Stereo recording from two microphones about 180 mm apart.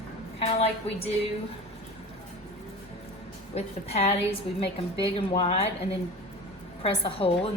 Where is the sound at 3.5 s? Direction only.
35° left (ahead or behind).